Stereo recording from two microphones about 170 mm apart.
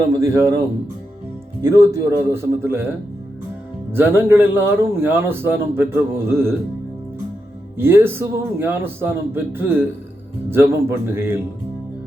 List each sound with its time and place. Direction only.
0.1 s a man's voice: 15° right (ahead or behind)
1.6 s a man's voice: 15° right (ahead or behind)
3.9 s a man's voice: 15° right (ahead or behind)
7.8 s a man's voice: 15° right (ahead or behind)